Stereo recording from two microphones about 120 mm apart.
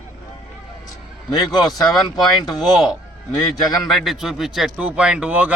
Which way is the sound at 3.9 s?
Centre (ahead or behind).